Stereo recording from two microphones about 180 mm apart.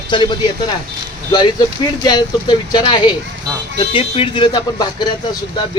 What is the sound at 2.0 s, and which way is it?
Speech, 25° left (ahead or behind).